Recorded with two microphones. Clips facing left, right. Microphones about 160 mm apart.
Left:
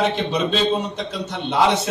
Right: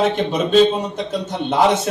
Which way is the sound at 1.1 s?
50° right (ahead or behind).